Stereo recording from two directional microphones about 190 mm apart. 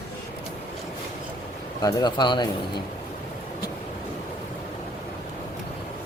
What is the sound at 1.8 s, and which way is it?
Speech, 20° left (ahead or behind).